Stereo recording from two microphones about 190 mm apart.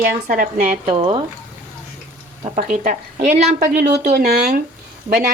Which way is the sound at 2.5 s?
45° right (ahead or behind).